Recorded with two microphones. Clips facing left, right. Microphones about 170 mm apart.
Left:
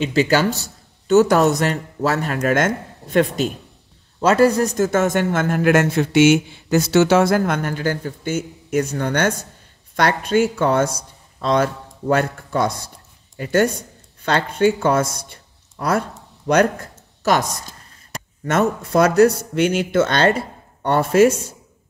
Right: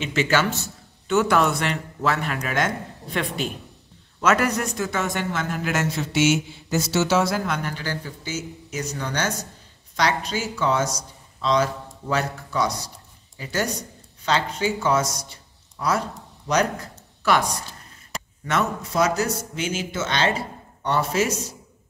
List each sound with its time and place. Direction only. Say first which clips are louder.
0.0 s a man's voice: left 5 dB; 35° left (ahead or behind)
4.2 s a man's voice: left 7 dB; 30° left (ahead or behind); by 15.3 s 55° left (ahead or behind)
17.2 s a man's voice: left 3 dB; 40° left (ahead or behind)